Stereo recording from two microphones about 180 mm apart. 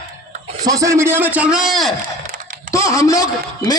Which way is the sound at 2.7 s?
20° left (ahead or behind).